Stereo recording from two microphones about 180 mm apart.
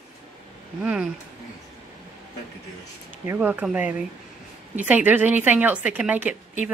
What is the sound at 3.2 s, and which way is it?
Speech, 10° right (ahead or behind).